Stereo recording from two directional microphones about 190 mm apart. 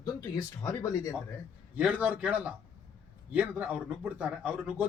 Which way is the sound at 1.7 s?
5° right (ahead or behind).